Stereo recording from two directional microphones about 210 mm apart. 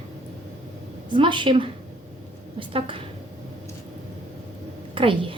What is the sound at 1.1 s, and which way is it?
A woman's voice, 25° right (ahead or behind).